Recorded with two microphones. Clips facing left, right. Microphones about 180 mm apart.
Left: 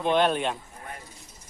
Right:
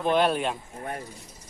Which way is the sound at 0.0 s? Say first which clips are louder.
Even; 5° right (ahead or behind).